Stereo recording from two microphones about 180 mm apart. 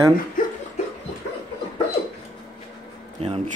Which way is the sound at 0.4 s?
50° left (ahead or behind).